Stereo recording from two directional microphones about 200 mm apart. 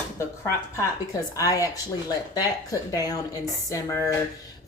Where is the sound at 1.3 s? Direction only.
15° left (ahead or behind).